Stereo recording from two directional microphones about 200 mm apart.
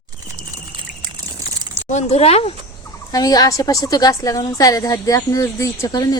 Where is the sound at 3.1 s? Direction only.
20° left (ahead or behind).